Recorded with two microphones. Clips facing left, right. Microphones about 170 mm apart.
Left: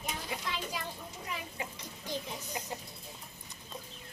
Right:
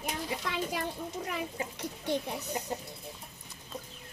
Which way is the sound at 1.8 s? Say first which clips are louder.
Right 11 dB; 65° right (ahead or behind).